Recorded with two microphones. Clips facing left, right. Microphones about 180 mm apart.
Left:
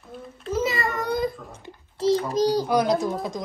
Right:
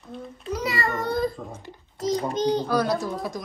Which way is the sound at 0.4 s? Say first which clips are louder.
Left 5 dB; centre (ahead or behind).